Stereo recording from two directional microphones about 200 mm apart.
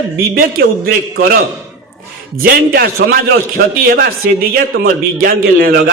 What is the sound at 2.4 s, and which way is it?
A man's voice, 50° right (ahead or behind).